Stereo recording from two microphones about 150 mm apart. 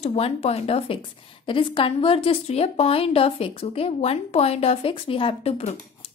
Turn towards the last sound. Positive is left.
turn(degrees=45)  # may be behind; listen again after turning